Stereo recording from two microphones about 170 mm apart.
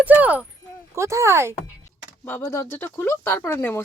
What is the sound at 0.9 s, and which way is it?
Speech, 15° right (ahead or behind).